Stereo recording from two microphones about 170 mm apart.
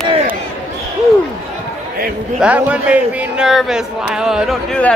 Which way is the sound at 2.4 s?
5° right (ahead or behind).